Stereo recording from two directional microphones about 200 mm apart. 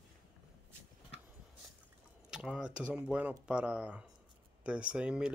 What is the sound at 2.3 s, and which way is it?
Speech, 5° right (ahead or behind).